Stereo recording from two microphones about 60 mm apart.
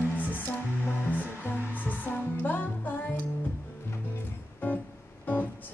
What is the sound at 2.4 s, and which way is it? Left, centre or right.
Music, left.